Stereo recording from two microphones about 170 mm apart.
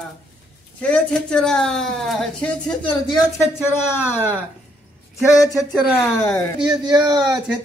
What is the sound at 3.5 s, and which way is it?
Speech, 15° left (ahead or behind).